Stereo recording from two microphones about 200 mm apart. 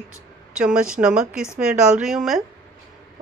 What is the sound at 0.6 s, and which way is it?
Speech, 5° right (ahead or behind).